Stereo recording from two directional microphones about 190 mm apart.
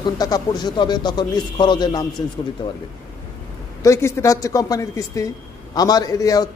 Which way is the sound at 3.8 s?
15° left (ahead or behind).